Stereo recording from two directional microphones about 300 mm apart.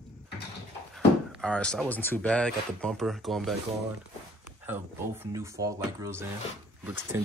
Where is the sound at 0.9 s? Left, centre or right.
Centre.